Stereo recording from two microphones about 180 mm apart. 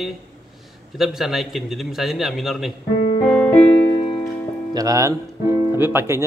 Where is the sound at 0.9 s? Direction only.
Centre (ahead or behind).